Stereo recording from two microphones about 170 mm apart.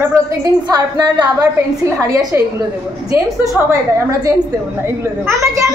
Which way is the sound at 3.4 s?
20° right (ahead or behind).